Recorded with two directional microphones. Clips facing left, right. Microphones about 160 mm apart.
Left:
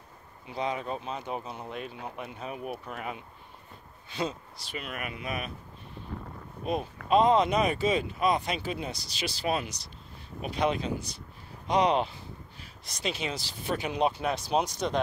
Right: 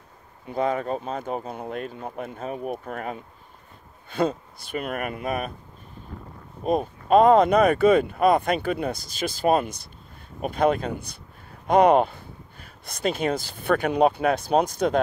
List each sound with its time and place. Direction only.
0.5 s speech: 50° right (ahead or behind)
6.6 s speech: 45° right (ahead or behind)